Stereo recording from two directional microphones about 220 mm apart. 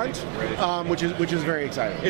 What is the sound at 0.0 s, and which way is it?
Speech, 15° right (ahead or behind).